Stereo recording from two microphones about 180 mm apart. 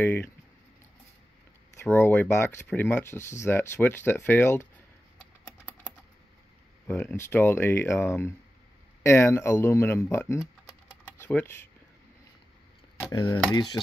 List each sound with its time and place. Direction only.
0.0 s speech: 10° left (ahead or behind)
1.8 s speech: 15° left (ahead or behind)
6.9 s speech: 15° left (ahead or behind)
11.1 s typing: 10° left (ahead or behind)
13.1 s speech: 25° left (ahead or behind)